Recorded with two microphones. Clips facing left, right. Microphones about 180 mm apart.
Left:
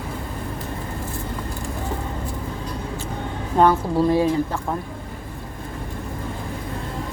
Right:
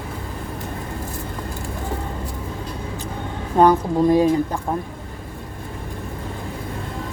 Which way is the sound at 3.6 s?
15° right (ahead or behind).